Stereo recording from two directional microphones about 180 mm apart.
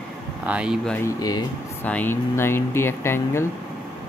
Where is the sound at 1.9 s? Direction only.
10° left (ahead or behind).